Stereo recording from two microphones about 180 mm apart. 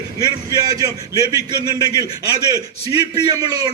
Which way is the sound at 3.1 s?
20° right (ahead or behind).